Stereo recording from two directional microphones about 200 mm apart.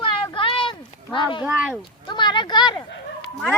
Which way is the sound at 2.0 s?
20° left (ahead or behind).